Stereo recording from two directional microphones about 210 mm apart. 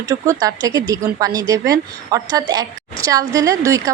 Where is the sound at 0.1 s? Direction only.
15° right (ahead or behind).